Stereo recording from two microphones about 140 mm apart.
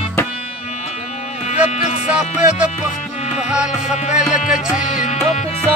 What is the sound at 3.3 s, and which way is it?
Music, 5° right (ahead or behind).